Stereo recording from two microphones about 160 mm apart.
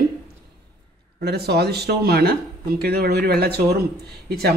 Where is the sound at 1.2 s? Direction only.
85° right.